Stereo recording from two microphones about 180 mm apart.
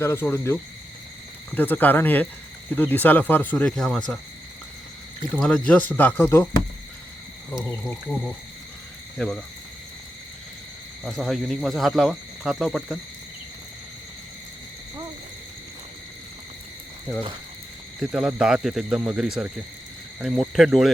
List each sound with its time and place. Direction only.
0.0 s speech: 10° left (ahead or behind)
5.4 s speech: 5° left (ahead or behind)
9.1 s speech: 5° left (ahead or behind)
11.0 s speech: centre (ahead or behind)
18.0 s speech: 5° right (ahead or behind)